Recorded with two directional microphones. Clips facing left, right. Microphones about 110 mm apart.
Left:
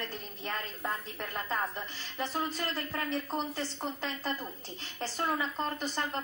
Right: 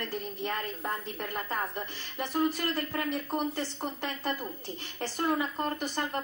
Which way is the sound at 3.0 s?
15° right (ahead or behind).